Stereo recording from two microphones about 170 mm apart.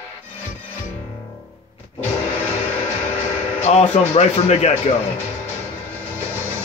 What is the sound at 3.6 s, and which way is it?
Speech, 40° left (ahead or behind).